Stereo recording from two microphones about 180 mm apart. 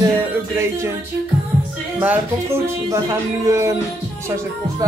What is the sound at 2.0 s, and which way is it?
Speech, 10° right (ahead or behind).